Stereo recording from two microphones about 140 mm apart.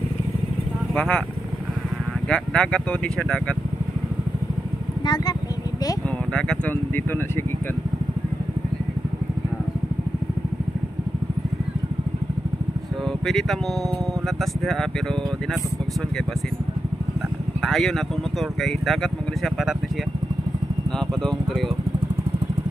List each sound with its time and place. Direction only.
0.9 s speech: 10° left (ahead or behind)
2.2 s speech: 5° left (ahead or behind)
5.0 s speech: 30° left (ahead or behind)
6.3 s a sound: 5° left (ahead or behind)
13.3 s speech: 5° left (ahead or behind)
17.6 s speech: centre (ahead or behind)
21.1 s speech: 5° left (ahead or behind)